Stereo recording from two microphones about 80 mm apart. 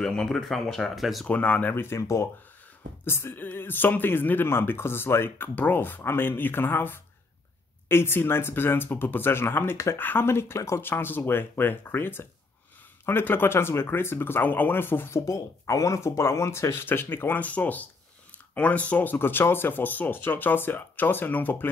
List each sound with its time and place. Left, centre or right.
0.0 s speech: centre
1.2 s speech: centre
2.0 s speech: left